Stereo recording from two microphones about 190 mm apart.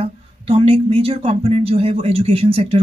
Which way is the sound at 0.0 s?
30° right (ahead or behind).